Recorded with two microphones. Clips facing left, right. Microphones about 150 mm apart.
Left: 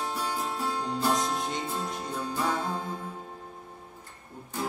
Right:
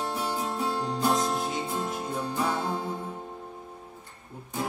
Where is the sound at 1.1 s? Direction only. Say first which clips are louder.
Right 2 dB; centre (ahead or behind).